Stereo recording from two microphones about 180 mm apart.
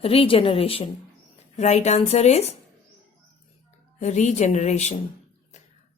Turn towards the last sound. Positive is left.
turn(degrees=40)  # may be behind; listen again after turning